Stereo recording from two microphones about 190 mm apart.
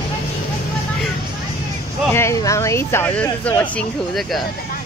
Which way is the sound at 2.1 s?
15° left (ahead or behind).